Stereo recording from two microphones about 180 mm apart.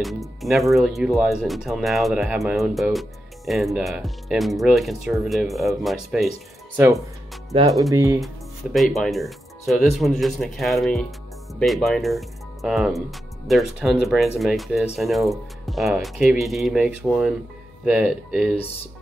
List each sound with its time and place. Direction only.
0.0 s speech: centre (ahead or behind)
7.5 s speech: 30° right (ahead or behind)
7.9 s speech: 15° right (ahead or behind)
8.7 s speech: centre (ahead or behind)